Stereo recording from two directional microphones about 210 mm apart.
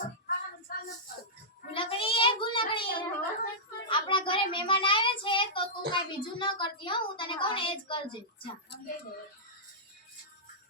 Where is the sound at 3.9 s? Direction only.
25° left (ahead or behind).